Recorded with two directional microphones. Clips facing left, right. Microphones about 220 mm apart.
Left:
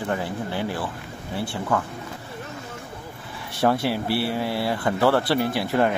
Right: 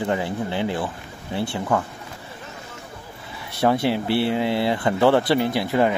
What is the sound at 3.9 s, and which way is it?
Speech, 5° left (ahead or behind).